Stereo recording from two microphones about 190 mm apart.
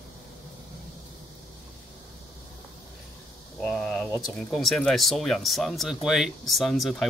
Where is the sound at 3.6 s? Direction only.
Centre (ahead or behind).